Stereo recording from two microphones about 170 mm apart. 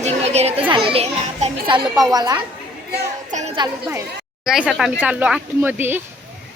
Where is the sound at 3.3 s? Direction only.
45° right (ahead or behind).